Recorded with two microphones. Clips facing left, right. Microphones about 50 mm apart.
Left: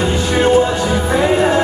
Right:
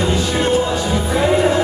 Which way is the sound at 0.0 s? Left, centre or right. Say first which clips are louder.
Left 3 dB; left.